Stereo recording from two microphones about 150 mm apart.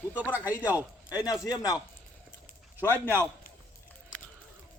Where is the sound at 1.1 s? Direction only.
25° left (ahead or behind).